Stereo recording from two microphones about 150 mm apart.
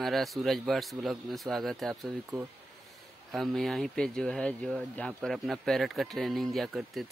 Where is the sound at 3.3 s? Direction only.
Centre (ahead or behind).